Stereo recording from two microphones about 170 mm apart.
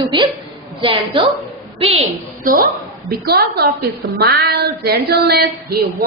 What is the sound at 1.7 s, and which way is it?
Speech, 35° right (ahead or behind).